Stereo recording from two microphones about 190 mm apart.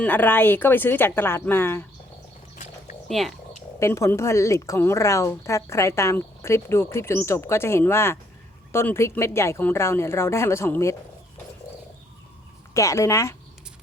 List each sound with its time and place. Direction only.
0.0 s a woman's voice: 10° left (ahead or behind)
3.1 s speech: centre (ahead or behind)
3.8 s a woman's voice: 15° left (ahead or behind)
12.7 s a woman's voice: 15° left (ahead or behind)